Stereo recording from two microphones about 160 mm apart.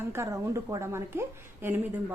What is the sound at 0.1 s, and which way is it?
A woman's voice, 15° right (ahead or behind).